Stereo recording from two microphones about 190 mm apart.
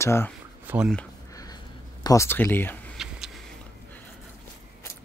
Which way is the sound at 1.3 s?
20° left (ahead or behind).